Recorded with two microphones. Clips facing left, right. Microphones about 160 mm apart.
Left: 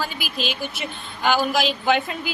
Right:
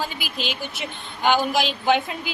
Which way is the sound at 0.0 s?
20° right (ahead or behind).